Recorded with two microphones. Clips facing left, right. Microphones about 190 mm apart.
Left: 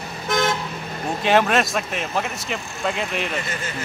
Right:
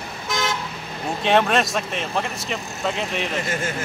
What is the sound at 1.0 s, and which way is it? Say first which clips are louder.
Speech: even; centre (ahead or behind).